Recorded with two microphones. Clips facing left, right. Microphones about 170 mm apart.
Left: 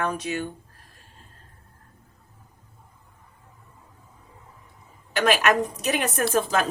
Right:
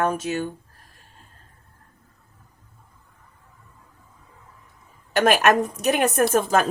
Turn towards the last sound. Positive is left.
turn(degrees=-45)  # may be behind; listen again after turning